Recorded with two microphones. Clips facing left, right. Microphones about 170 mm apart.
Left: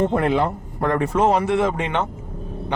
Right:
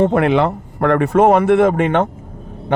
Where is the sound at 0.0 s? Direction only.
70° right (ahead or behind).